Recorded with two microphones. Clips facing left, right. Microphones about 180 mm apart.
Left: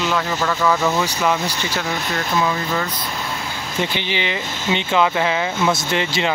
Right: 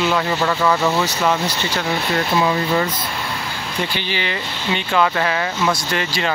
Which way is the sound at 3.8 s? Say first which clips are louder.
Left 2 dB; 20° left (ahead or behind).